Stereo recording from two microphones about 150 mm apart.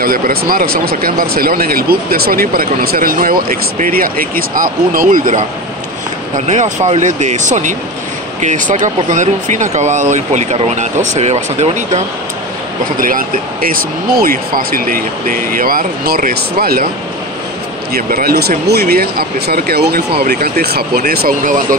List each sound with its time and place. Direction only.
0.0 s speech: 80° right; by 12.0 s 45° right (ahead or behind)
13.0 s speech: 70° right (ahead or behind); by 16.9 s 85° right
17.9 s speech: 90° right
21.1 s speech: 75° right (ahead or behind)